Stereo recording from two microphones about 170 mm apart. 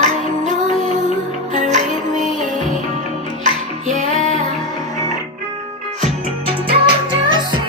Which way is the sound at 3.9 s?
50° right (ahead or behind).